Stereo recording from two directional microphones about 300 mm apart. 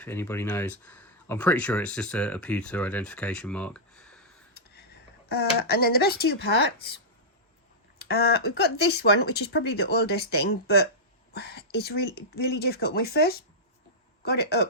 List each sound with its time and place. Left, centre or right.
0.0 s speech: centre
4.5 s a sound: left
5.3 s speech: left